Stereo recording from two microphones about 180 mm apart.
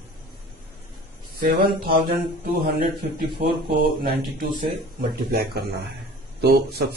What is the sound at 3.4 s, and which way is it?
Speech, 45° right (ahead or behind).